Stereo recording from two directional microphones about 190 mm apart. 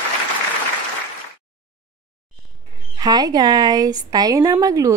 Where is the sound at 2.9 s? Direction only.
20° right (ahead or behind).